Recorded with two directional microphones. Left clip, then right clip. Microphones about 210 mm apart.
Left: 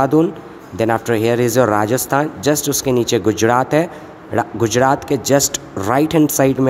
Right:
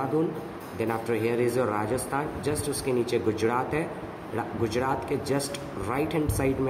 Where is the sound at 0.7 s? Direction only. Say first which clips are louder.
Left 12 dB; 50° left (ahead or behind).